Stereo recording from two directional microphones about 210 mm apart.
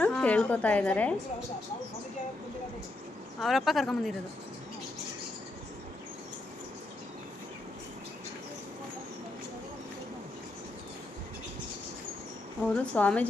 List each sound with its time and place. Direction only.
0.0 s a woman's voice: 5° left (ahead or behind)
3.4 s speech: centre (ahead or behind)
12.6 s a woman's voice: 5° left (ahead or behind)